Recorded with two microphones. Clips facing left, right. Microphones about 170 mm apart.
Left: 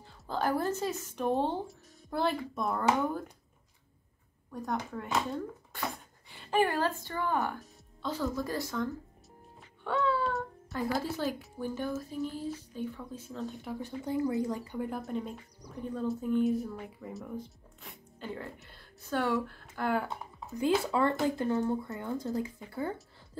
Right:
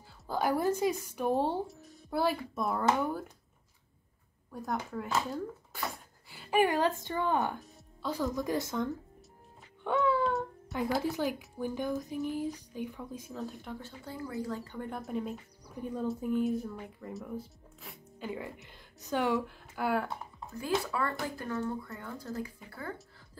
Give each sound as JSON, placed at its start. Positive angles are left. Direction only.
{"t": 0.0, "sound": "a woman's voice", "side_deg": -10}
{"t": 4.5, "sound": "speech", "side_deg": 0}
{"t": 6.2, "sound": "a sound", "side_deg": -5}
{"t": 6.6, "sound": "a woman's voice", "side_deg": -15}
{"t": 13.4, "sound": "speech", "side_deg": 0}
{"t": 13.7, "sound": "speech", "side_deg": 15}
{"t": 19.9, "sound": "speech", "side_deg": 0}
{"t": 20.5, "sound": "speech", "side_deg": 25}